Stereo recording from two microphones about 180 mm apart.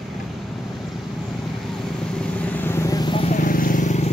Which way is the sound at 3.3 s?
50° left (ahead or behind).